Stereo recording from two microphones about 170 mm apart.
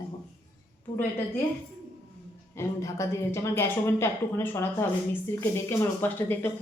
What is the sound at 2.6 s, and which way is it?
Speech, 15° left (ahead or behind).